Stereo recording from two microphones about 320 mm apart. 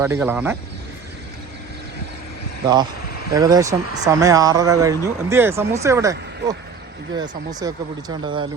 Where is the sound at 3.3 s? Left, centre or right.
Centre.